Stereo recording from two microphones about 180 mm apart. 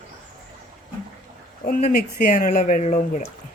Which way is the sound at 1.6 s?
50° left (ahead or behind).